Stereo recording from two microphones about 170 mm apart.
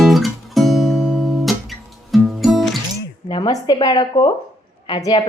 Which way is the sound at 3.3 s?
25° left (ahead or behind).